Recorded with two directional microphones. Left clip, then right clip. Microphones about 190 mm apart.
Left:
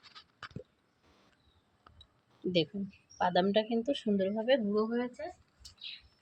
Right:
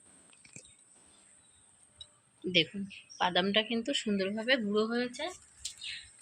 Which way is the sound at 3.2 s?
35° left (ahead or behind).